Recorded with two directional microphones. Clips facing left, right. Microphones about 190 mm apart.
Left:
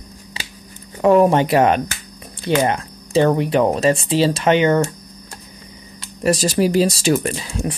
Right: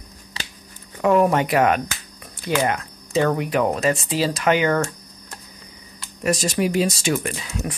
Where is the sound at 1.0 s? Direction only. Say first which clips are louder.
Left 4 dB; 30° left (ahead or behind).